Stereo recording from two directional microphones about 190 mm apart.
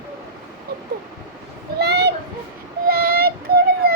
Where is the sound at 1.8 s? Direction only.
60° right (ahead or behind).